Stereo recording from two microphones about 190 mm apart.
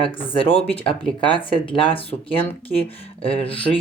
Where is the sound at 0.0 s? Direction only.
30° left (ahead or behind).